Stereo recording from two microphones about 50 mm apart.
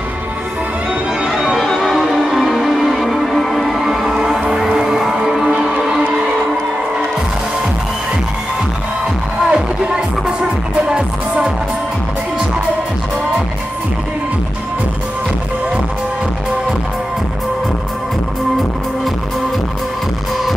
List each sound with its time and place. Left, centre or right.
1.2 s music: centre
1.6 s music: centre
9.5 s music: centre